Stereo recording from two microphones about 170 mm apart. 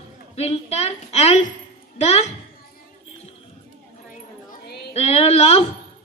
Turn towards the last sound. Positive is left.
turn(degrees=40)  # may be behind; listen again after turning